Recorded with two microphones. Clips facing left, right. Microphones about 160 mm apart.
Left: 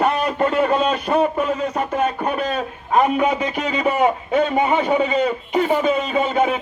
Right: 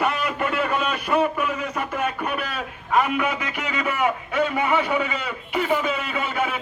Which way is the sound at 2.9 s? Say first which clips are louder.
Left 5 dB; 30° left (ahead or behind).